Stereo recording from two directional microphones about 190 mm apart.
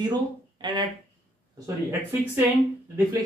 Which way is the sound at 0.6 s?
25° right (ahead or behind).